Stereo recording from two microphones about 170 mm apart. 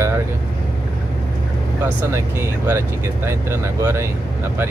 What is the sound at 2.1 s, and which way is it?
Speech, 15° right (ahead or behind).